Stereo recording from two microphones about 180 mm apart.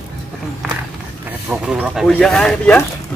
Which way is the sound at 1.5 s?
5° right (ahead or behind).